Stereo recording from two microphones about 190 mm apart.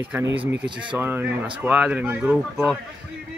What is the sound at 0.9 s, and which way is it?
Speech, 10° right (ahead or behind).